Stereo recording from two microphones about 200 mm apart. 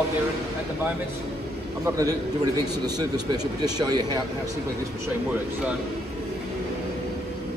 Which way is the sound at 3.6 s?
20° right (ahead or behind).